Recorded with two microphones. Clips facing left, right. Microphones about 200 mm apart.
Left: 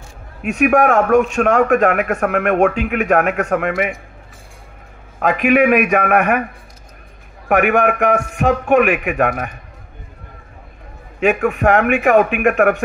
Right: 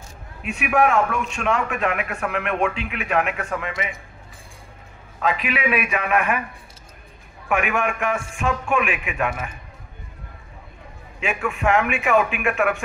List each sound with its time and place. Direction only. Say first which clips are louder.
0.4 s a man's voice: left 6 dB; 45° left (ahead or behind)
3.3 s a man's voice: left 10 dB; 65° left (ahead or behind)
5.2 s a man's voice: left 10 dB; 50° left (ahead or behind)
11.1 s a man's voice: left 10 dB; 60° left (ahead or behind)